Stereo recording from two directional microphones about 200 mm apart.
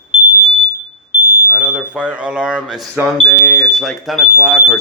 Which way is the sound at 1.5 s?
5° right (ahead or behind).